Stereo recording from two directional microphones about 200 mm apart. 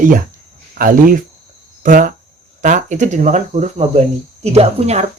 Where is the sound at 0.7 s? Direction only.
45° right (ahead or behind).